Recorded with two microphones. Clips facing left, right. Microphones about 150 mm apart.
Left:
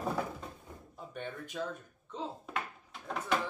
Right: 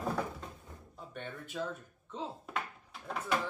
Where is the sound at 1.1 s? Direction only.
Centre (ahead or behind).